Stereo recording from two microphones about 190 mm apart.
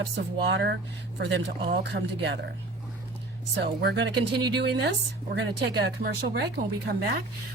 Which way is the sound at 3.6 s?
65° right (ahead or behind).